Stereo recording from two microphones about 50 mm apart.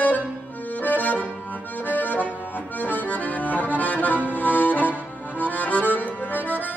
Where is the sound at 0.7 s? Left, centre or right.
Left.